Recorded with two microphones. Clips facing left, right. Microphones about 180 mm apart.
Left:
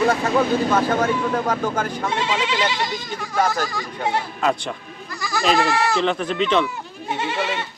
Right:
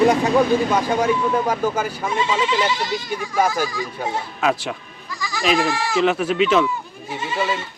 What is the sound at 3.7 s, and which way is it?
Speech, 70° left (ahead or behind).